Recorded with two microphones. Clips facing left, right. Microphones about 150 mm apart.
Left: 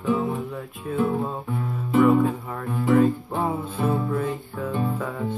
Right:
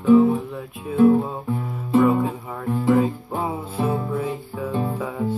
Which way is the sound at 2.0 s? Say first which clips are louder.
Left 1 dB; 10° right (ahead or behind).